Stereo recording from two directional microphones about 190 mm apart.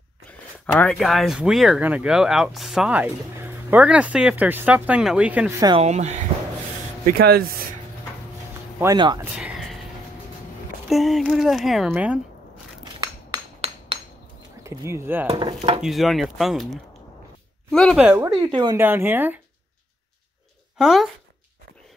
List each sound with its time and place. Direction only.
0.7 s speech: 5° left (ahead or behind)
5.8 s speech: 35° right (ahead or behind)
7.1 s speech: 55° right (ahead or behind)
8.7 s dishes: 20° right (ahead or behind)
9.2 s a sound: 5° right (ahead or behind)
10.9 s speech: centre (ahead or behind)
13.6 s hammer: 35° right (ahead or behind)
14.6 s speech: 15° right (ahead or behind)
15.2 s dishes: 30° right (ahead or behind)
15.8 s speech: centre (ahead or behind)
18.0 s speech: 15° right (ahead or behind)
18.5 s dishes: 25° right (ahead or behind)
18.8 s speech: 10° right (ahead or behind)
20.7 s speech: centre (ahead or behind)